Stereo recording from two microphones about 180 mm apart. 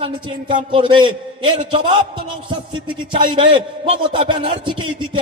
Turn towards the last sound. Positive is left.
turn(degrees=-25)  # may be behind; listen again after turning